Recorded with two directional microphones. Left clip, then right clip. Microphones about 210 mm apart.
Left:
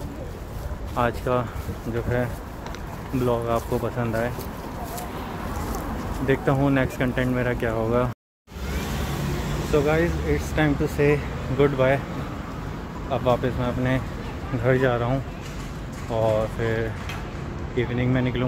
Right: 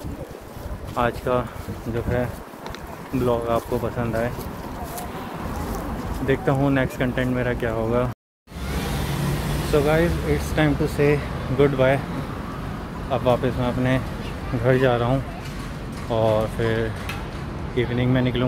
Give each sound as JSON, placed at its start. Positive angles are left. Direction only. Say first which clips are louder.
{"t": 0.9, "sound": "speech", "louder": "right 1 dB", "side_deg": -5}
{"t": 3.3, "sound": "speech", "louder": "right 2 dB", "side_deg": -5}
{"t": 6.2, "sound": "speech", "louder": "right 1 dB", "side_deg": 10}
{"t": 9.8, "sound": "speech", "louder": "right 2 dB", "side_deg": -5}
{"t": 13.1, "sound": "speech", "louder": "right 2 dB", "side_deg": 0}